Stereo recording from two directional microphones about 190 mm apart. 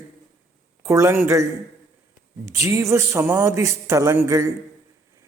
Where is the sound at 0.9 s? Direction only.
15° right (ahead or behind).